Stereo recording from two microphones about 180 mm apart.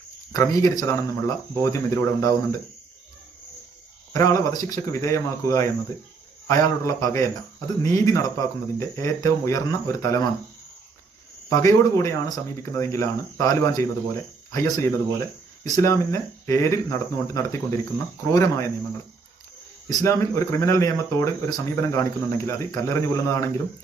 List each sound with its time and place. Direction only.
0.3 s a man's voice: 20° left (ahead or behind)
4.1 s a man's voice: 15° left (ahead or behind)
11.4 s a man's voice: 20° left (ahead or behind)
19.9 s a man's voice: 15° left (ahead or behind)